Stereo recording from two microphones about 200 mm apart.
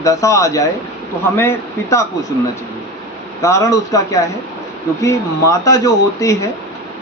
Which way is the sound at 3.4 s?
15° left (ahead or behind).